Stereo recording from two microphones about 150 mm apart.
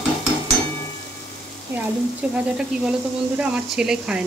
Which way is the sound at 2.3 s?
5° right (ahead or behind).